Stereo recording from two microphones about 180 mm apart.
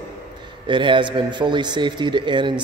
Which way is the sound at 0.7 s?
25° right (ahead or behind).